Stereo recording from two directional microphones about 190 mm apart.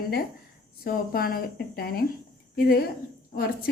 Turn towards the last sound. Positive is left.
turn(degrees=50)  # may be behind; listen again after turning